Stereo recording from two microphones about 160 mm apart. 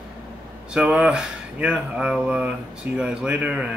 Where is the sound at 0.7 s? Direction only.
5° right (ahead or behind).